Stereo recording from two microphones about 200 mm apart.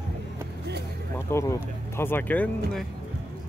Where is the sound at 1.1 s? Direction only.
15° left (ahead or behind).